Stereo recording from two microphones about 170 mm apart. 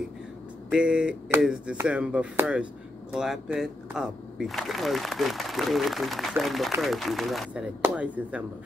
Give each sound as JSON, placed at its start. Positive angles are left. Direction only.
{"t": 0.7, "sound": "speech", "side_deg": -5}